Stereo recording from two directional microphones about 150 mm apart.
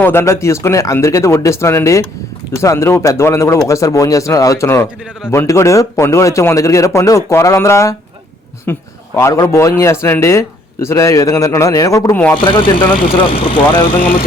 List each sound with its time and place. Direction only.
0.0 s a man's voice: 15° left (ahead or behind)
12.4 s speech: 35° left (ahead or behind)